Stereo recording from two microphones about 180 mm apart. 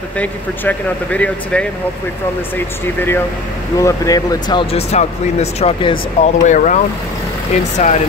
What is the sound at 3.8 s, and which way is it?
Speech, 20° left (ahead or behind).